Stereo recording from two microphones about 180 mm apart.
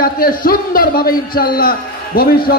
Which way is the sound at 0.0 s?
55° left (ahead or behind).